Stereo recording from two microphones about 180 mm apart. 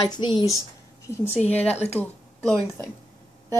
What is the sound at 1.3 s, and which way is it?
Speech, 35° left (ahead or behind).